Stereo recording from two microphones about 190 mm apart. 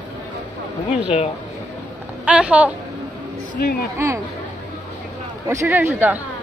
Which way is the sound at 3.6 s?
50° left (ahead or behind).